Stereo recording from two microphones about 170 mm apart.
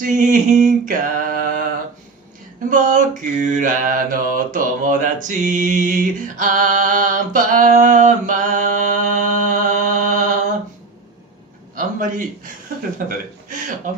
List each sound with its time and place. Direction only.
0.0 s mantra: 50° right (ahead or behind)
2.7 s mantra: 50° right (ahead or behind)
11.7 s a man's voice: 50° right (ahead or behind)